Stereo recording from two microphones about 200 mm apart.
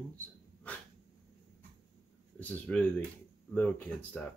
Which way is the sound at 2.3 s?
5° left (ahead or behind).